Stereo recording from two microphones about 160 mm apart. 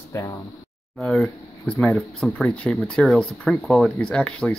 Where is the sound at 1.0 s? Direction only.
5° left (ahead or behind).